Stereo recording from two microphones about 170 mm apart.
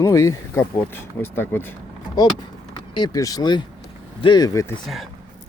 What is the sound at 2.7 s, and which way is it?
Speech, 25° left (ahead or behind).